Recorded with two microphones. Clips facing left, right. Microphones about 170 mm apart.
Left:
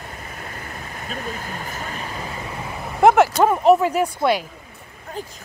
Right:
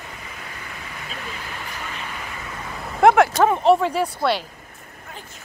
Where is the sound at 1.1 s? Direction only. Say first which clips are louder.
Left 6 dB; 45° left (ahead or behind).